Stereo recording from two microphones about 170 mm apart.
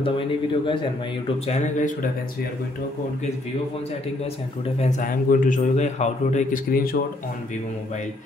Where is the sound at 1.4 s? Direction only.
45° left (ahead or behind).